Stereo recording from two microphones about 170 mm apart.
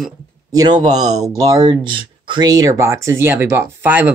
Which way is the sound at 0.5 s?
25° right (ahead or behind).